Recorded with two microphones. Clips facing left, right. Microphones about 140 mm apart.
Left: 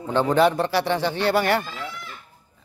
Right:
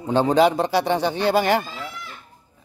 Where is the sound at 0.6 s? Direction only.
15° right (ahead or behind).